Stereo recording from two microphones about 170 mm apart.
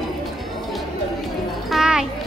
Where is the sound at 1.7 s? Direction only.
5° right (ahead or behind).